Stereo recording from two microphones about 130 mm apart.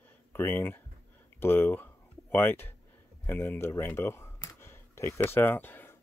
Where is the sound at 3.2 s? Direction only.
15° left (ahead or behind).